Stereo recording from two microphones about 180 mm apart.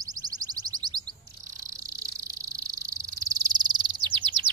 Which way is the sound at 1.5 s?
20° right (ahead or behind).